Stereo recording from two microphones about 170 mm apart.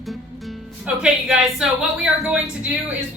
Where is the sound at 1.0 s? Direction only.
5° right (ahead or behind).